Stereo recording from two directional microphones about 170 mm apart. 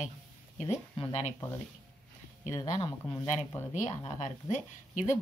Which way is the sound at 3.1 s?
40° left (ahead or behind).